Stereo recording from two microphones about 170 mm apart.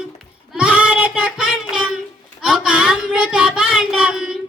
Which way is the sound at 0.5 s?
5° right (ahead or behind).